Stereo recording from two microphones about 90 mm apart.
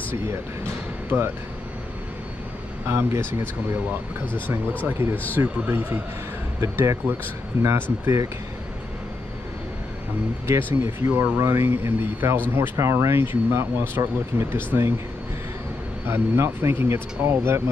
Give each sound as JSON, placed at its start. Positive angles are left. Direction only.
{"t": 1.1, "sound": "speech", "side_deg": -20}
{"t": 2.9, "sound": "speech", "side_deg": -30}
{"t": 4.8, "sound": "speech", "side_deg": -25}
{"t": 10.7, "sound": "speech", "side_deg": -30}
{"t": 16.1, "sound": "speech", "side_deg": -30}